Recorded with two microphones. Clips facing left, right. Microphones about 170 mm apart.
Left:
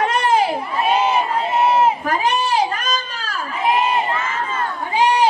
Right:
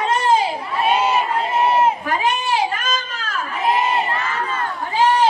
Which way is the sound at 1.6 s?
Centre (ahead or behind).